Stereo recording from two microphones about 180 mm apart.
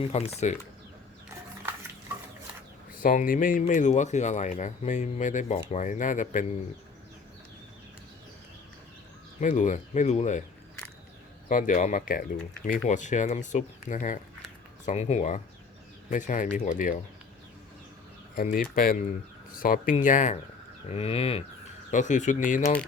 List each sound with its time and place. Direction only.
0.0 s speech: 30° left (ahead or behind)
3.0 s speech: 50° left (ahead or behind)
9.4 s speech: 45° left (ahead or behind)
11.4 s speech: 45° left (ahead or behind)
18.3 s speech: 50° left (ahead or behind)
20.9 s speech: 35° left (ahead or behind)
21.8 s speech: 45° left (ahead or behind)